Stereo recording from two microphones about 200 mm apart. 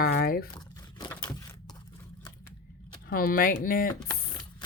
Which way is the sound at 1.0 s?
15° left (ahead or behind).